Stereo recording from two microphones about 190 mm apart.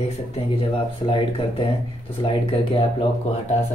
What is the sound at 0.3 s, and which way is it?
Speech, 30° left (ahead or behind).